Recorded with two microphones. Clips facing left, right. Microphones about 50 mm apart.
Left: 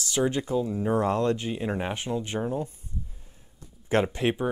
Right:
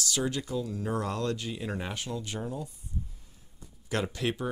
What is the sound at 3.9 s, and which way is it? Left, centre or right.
Speech, left.